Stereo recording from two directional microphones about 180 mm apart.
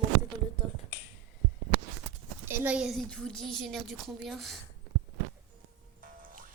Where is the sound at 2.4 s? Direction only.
15° right (ahead or behind).